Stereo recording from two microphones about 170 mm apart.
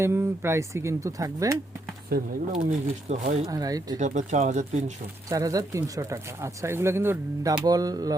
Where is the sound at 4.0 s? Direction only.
45° right (ahead or behind).